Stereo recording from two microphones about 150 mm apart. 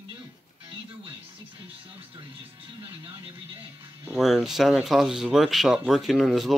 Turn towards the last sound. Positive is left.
turn(degrees=0)  # may be behind; listen again after turning